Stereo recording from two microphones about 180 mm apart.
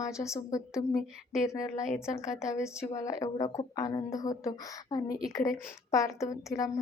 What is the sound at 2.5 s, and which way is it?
A woman's voice, 15° left (ahead or behind).